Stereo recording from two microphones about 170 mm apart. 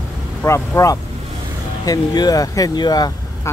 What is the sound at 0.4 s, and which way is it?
Speech, 15° left (ahead or behind).